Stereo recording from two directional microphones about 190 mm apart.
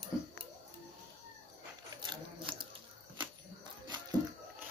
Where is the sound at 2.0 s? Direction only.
25° right (ahead or behind).